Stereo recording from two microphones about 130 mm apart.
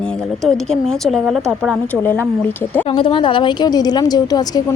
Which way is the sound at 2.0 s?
15° left (ahead or behind).